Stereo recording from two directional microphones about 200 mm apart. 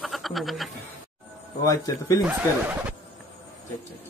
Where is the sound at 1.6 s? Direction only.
20° left (ahead or behind).